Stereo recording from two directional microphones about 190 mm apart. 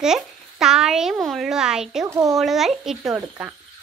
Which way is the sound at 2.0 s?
15° right (ahead or behind).